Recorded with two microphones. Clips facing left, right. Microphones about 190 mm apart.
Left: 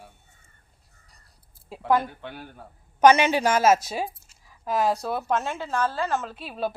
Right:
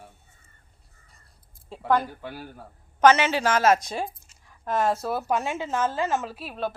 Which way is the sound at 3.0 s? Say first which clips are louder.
Left 1 dB; 15° left (ahead or behind).